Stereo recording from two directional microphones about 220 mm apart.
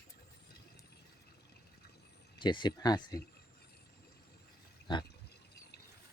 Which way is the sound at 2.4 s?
20° left (ahead or behind).